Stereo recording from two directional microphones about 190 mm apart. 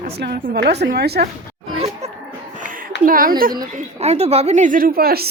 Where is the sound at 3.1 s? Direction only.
50° right (ahead or behind).